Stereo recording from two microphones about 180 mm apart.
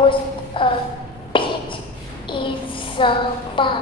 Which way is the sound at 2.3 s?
30° left (ahead or behind).